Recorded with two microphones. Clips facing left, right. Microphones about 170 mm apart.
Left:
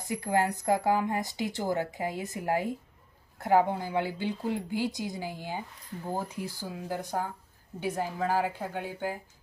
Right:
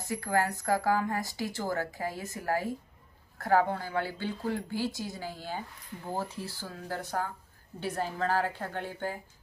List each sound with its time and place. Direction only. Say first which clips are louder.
0.0 s a woman's voice: left 2 dB; 20° left (ahead or behind)